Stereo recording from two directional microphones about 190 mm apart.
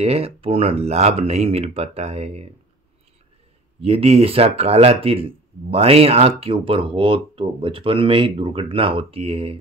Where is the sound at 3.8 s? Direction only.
30° right (ahead or behind).